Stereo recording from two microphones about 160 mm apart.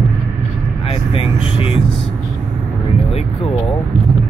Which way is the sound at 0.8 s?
35° left (ahead or behind).